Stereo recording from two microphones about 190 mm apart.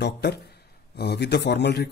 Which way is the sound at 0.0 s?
60° left (ahead or behind).